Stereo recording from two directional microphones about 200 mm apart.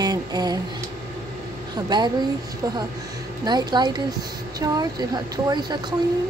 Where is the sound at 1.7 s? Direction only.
20° right (ahead or behind).